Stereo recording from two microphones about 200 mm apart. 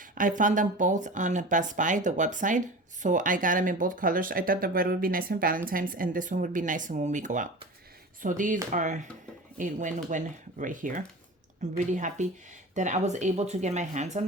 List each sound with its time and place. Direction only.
0.0 s speech: 40° right (ahead or behind)